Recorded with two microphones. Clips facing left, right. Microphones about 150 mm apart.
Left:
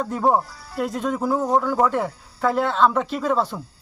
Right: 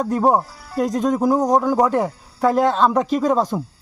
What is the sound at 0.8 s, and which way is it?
Speech, 40° right (ahead or behind).